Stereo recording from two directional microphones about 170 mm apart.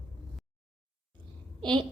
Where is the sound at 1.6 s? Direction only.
30° right (ahead or behind).